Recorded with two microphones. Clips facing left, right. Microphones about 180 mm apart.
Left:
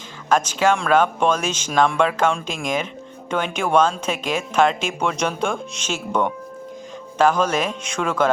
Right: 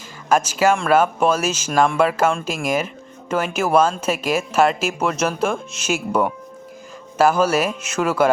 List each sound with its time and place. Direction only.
0.3 s speech: 10° right (ahead or behind)